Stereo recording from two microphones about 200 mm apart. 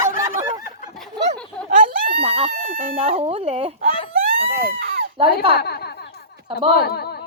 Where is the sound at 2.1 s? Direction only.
25° right (ahead or behind).